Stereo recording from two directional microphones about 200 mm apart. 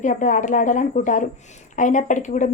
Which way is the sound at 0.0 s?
40° left (ahead or behind).